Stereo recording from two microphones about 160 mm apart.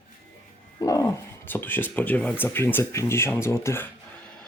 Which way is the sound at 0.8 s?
20° left (ahead or behind).